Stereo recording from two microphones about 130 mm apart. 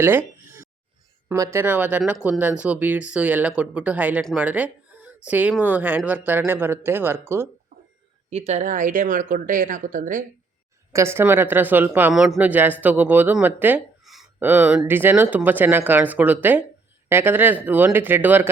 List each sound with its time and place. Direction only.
0.0 s a sound: 15° right (ahead or behind)
1.4 s speech: 20° right (ahead or behind)
8.3 s speech: 55° right (ahead or behind); by 10.2 s 90° right
10.9 s speech: 20° right (ahead or behind)
14.0 s a sound: centre (ahead or behind)
14.3 s speech: 15° right (ahead or behind)